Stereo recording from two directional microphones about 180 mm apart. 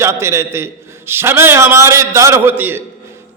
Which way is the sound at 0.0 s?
15° right (ahead or behind).